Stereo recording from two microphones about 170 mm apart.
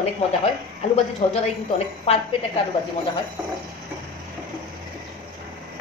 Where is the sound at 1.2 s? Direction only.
40° left (ahead or behind).